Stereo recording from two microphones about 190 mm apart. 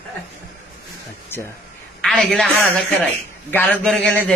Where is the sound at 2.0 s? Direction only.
Centre (ahead or behind).